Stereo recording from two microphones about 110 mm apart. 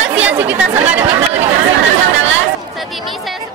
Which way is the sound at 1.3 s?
75° right (ahead or behind).